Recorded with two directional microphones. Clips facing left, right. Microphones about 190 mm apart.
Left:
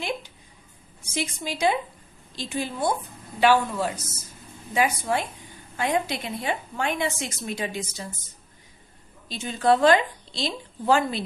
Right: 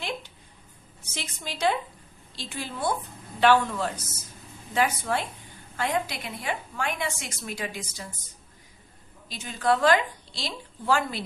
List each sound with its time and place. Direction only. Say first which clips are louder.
1.0 s a woman's voice: left 8 dB; 10° left (ahead or behind)
9.3 s a woman's voice: left 4 dB; 25° left (ahead or behind)